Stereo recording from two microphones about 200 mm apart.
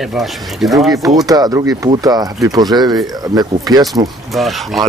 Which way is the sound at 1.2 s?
20° right (ahead or behind).